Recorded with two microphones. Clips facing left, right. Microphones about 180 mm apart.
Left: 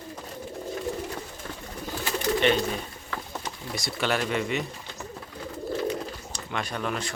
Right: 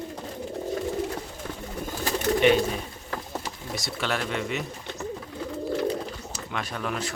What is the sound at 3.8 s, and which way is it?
Speech, centre (ahead or behind).